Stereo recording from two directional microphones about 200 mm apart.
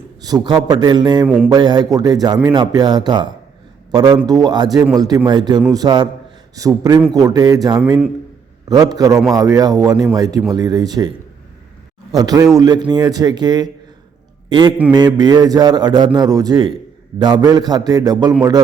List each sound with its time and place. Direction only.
0.3 s a man's voice: 20° right (ahead or behind)
8.7 s a man's voice: 20° right (ahead or behind)
12.1 s a man's voice: 20° right (ahead or behind)
14.9 s a man's voice: 20° right (ahead or behind)